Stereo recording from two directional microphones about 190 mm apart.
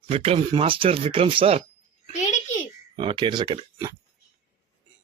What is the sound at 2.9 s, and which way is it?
Speech, 30° right (ahead or behind).